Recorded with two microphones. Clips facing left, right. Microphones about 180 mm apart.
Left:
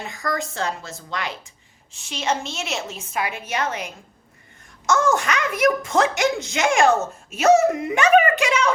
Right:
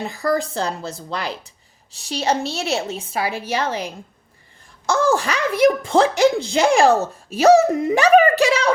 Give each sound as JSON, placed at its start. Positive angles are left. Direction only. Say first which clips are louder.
{"t": 0.0, "sound": "a woman's voice", "louder": "right 6 dB", "side_deg": -35}